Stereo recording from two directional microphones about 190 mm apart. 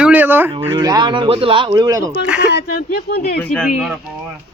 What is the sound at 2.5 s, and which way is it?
Speech, 55° left (ahead or behind).